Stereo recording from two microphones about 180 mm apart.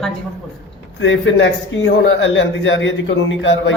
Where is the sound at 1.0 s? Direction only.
90° left.